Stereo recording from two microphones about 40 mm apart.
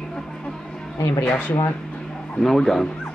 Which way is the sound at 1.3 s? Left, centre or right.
Left.